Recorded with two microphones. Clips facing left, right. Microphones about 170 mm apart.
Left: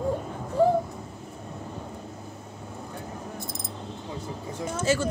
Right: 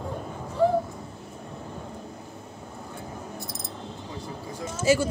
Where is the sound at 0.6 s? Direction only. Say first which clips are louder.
Left 2 dB; 45° left (ahead or behind).